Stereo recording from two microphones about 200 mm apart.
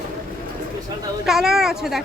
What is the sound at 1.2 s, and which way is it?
Speech, centre (ahead or behind).